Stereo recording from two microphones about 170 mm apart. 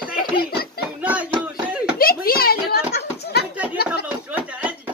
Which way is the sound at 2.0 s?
60° left (ahead or behind).